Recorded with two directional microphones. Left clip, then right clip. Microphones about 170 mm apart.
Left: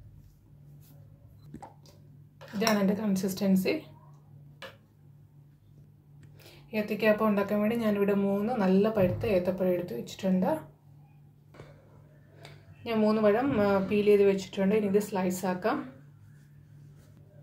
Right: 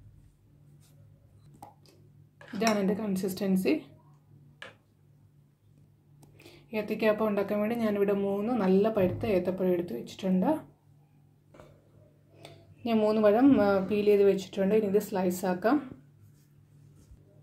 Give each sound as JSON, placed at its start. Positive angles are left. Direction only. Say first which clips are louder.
{"t": 3.0, "sound": "a woman's voice", "louder": "left 1 dB", "side_deg": -40}
{"t": 6.7, "sound": "a woman's voice", "louder": "left 1 dB", "side_deg": -45}
{"t": 12.8, "sound": "a woman's voice", "louder": "right 1 dB", "side_deg": -45}